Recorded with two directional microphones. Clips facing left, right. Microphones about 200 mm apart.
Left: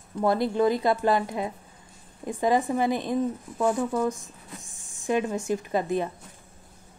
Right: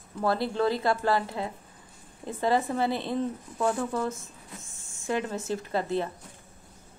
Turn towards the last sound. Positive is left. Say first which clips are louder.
# left 2 dB
turn(degrees=15)  # may be behind; listen again after turning